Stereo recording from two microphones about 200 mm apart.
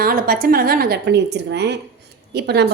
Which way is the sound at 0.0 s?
45° right (ahead or behind).